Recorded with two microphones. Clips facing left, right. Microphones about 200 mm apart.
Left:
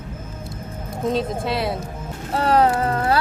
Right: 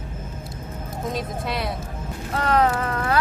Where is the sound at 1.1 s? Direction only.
30° left (ahead or behind).